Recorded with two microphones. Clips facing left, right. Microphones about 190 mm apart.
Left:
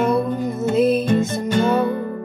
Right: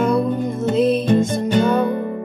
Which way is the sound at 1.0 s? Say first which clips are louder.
Right 2 dB; 15° right (ahead or behind).